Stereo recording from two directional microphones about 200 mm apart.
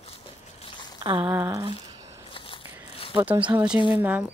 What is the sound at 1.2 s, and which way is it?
Speech, 10° right (ahead or behind).